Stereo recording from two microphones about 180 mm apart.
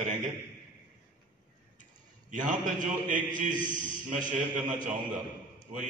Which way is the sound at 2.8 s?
45° right (ahead or behind).